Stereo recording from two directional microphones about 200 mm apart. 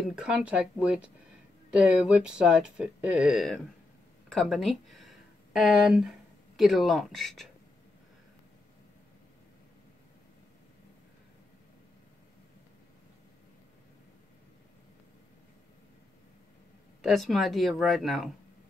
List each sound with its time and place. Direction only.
0.1 s speech: 5° right (ahead or behind)
17.0 s speech: centre (ahead or behind)